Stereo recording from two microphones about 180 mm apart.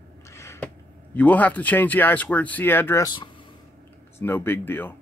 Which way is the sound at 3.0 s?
25° left (ahead or behind).